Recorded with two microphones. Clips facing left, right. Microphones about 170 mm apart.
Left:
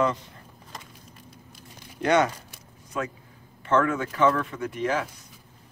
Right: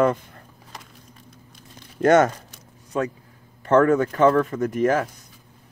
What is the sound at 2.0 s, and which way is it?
Speech, 45° right (ahead or behind).